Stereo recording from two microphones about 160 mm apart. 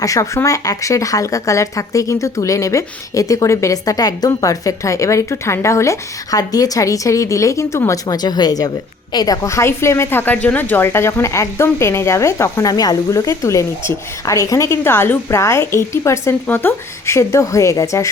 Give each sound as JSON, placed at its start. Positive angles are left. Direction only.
{"t": 0.0, "sound": "a woman's voice", "side_deg": 20}